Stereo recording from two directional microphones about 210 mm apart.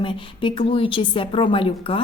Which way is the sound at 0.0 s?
25° left (ahead or behind).